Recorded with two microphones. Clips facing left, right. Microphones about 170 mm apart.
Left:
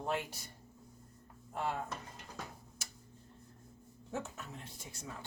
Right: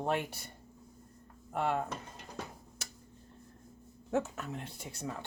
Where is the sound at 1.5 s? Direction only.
65° right (ahead or behind).